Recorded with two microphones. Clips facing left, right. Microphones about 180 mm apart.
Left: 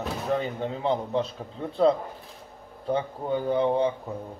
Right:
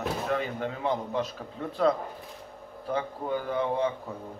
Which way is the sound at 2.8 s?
30° left (ahead or behind).